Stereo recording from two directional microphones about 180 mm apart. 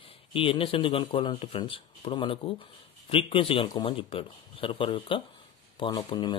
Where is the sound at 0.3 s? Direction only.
30° left (ahead or behind).